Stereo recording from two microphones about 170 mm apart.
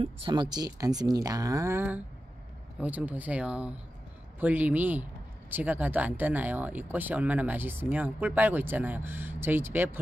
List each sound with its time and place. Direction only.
0.0 s speech: 30° right (ahead or behind); by 9.8 s 10° right (ahead or behind)